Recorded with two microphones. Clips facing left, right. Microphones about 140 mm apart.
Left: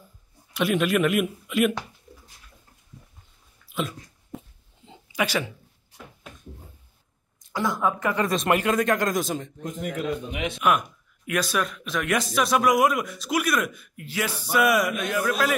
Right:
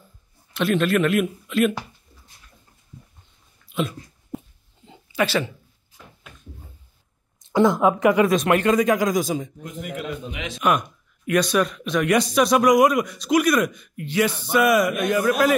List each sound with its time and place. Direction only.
0.5 s a man's voice: 10° left (ahead or behind)
3.7 s dog: centre (ahead or behind)
4.8 s a sound: 20° left (ahead or behind)
7.5 s a woman's voice: 25° right (ahead or behind)
8.3 s speech: centre (ahead or behind)
10.6 s speech: 5° left (ahead or behind)
15.0 s a man's voice: 10° right (ahead or behind)